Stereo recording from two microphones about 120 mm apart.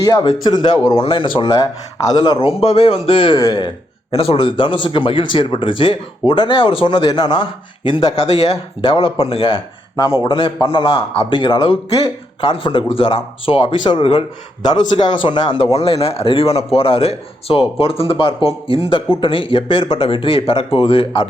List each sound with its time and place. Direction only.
0.0 s a man's voice: 30° left (ahead or behind)
0.9 s a man's voice: 45° left (ahead or behind)
2.5 s a man's voice: 55° left (ahead or behind); by 3.7 s 35° left (ahead or behind)
4.1 s speech: 55° left (ahead or behind)